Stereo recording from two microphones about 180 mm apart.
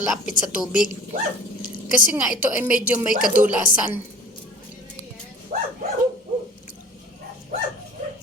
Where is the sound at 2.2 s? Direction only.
5° right (ahead or behind).